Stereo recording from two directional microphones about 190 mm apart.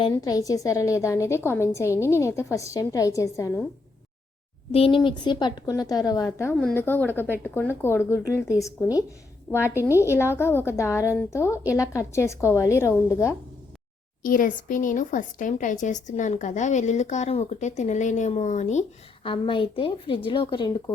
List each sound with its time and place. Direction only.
0.0 s a woman's voice: 20° left (ahead or behind)
4.7 s a woman's voice: 30° left (ahead or behind)
14.2 s speech: 45° left (ahead or behind); by 20.9 s 20° left (ahead or behind)